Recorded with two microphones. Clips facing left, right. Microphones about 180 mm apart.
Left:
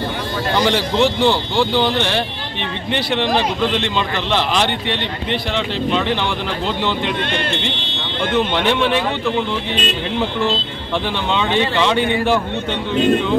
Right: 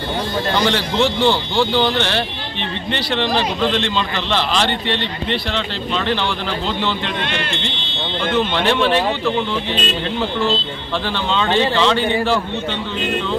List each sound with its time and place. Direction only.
0.7 s a man's voice: 10° left (ahead or behind)
3.7 s a man's voice: 10° left (ahead or behind)
11.3 s a man's voice: 15° left (ahead or behind)